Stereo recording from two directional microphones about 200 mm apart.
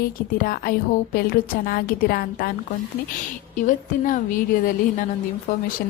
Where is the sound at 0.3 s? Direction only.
45° left (ahead or behind).